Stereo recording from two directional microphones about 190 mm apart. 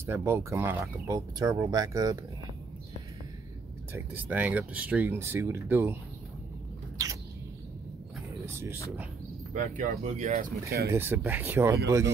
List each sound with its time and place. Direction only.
0.0 s speech: 15° right (ahead or behind)
3.9 s speech: 10° right (ahead or behind)
7.0 s rodents: 15° right (ahead or behind)
9.5 s speech: 40° right (ahead or behind)
10.9 s speech: 10° right (ahead or behind)